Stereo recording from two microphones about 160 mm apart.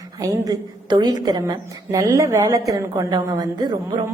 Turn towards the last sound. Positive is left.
turn(degrees=-25)  # may be behind; listen again after turning